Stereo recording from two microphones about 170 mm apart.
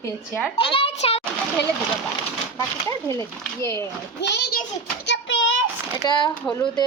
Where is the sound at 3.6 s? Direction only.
20° left (ahead or behind).